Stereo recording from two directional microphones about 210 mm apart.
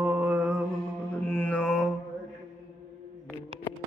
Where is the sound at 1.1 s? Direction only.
10° left (ahead or behind).